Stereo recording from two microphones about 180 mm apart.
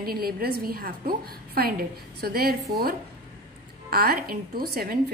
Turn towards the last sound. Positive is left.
turn(degrees=-60)  # may be behind; listen again after turning